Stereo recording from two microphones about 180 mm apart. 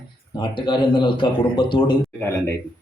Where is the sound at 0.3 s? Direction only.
25° left (ahead or behind).